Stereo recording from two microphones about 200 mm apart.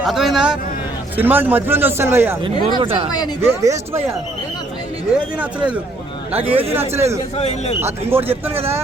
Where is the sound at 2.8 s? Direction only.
30° right (ahead or behind).